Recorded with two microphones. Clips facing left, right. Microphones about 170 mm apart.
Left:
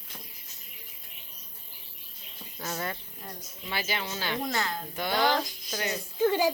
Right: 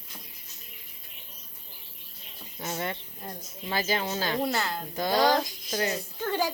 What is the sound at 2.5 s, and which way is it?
Speech, 25° right (ahead or behind).